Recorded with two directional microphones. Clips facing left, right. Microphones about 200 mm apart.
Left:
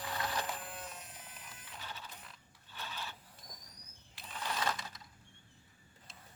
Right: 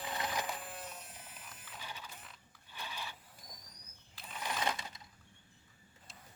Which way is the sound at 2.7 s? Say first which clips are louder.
Even; 15° right (ahead or behind).